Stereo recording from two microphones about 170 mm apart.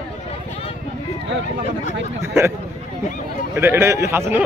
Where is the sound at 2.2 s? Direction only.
15° right (ahead or behind).